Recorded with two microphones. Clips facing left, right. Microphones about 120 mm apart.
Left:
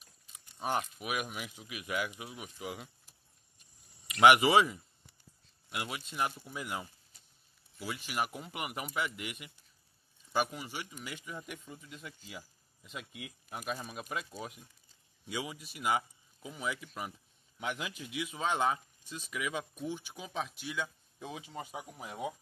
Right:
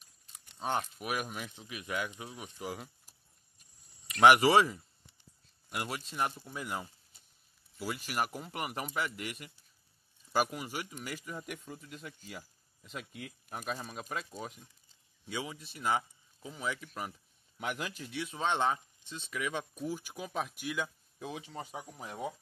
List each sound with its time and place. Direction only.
0.6 s speech: 10° left (ahead or behind)
4.2 s speech: centre (ahead or behind)
15.2 s speech: 10° left (ahead or behind)